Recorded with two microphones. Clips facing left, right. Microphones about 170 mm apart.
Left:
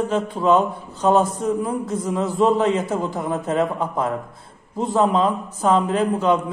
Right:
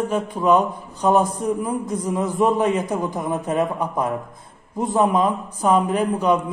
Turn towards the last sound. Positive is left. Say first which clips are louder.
# even
turn(degrees=-10)  # may be behind; listen again after turning